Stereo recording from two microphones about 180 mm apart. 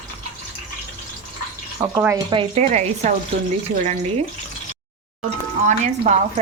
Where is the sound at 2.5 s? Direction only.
40° right (ahead or behind).